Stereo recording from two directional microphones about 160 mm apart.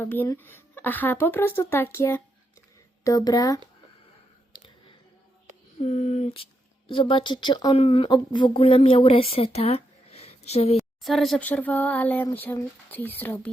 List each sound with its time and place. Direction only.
0.0 s speech: 10° left (ahead or behind)
4.5 s a sound: 35° left (ahead or behind)
5.8 s speech: 45° left (ahead or behind)
10.8 s speech: centre (ahead or behind)